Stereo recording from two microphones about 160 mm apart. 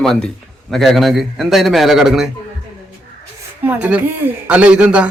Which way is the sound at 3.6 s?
10° right (ahead or behind).